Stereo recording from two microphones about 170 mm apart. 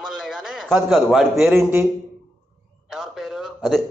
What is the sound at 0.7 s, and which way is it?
Speech, 10° right (ahead or behind).